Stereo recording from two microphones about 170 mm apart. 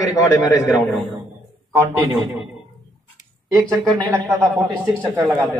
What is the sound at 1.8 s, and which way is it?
Speech, 10° right (ahead or behind).